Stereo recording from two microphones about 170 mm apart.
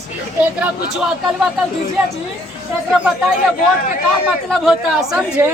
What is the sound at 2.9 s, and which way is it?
Speech, centre (ahead or behind).